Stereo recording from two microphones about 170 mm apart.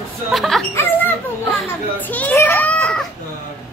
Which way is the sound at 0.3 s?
Centre (ahead or behind).